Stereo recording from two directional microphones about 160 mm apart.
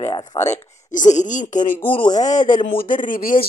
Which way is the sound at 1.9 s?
30° left (ahead or behind).